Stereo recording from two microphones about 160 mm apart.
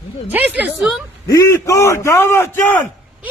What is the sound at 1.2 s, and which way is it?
A man's voice, 20° left (ahead or behind).